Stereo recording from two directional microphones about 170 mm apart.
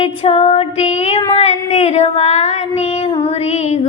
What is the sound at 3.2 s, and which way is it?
Female singing, 40° left (ahead or behind).